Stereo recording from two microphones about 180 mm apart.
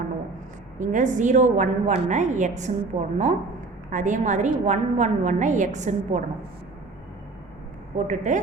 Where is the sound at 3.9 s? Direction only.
45° right (ahead or behind).